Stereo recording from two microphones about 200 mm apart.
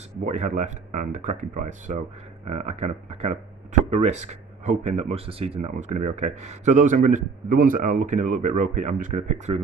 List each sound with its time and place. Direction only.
0.2 s speech: 35° right (ahead or behind)